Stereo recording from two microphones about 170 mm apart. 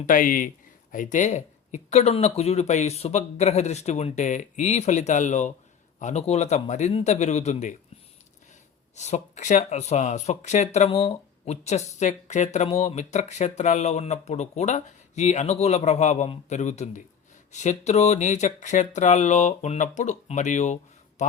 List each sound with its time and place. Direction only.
0.0 s speech: 50° left (ahead or behind)
9.0 s speech: 40° left (ahead or behind)